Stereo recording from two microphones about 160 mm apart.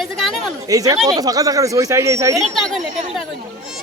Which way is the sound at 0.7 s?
20° right (ahead or behind).